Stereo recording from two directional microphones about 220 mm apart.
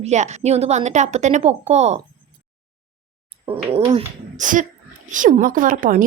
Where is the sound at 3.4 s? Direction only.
25° right (ahead or behind).